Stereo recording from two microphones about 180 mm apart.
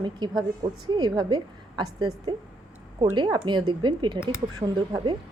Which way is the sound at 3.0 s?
25° right (ahead or behind).